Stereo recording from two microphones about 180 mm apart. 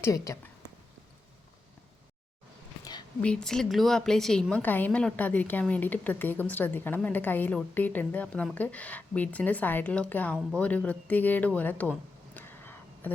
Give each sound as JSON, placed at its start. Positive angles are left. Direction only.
{"t": 0.0, "sound": "a woman's voice", "side_deg": 15}
{"t": 3.2, "sound": "a woman's voice", "side_deg": 5}